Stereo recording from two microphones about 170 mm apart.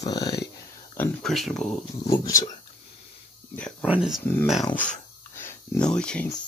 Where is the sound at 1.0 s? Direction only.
Centre (ahead or behind).